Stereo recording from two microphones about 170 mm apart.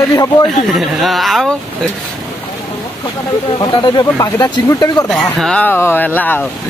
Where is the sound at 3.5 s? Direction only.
25° left (ahead or behind).